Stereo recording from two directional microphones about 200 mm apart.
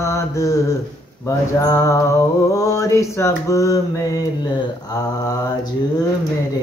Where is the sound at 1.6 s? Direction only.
15° left (ahead or behind).